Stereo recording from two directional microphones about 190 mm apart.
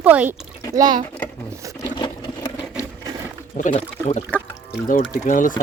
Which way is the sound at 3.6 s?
40° left (ahead or behind).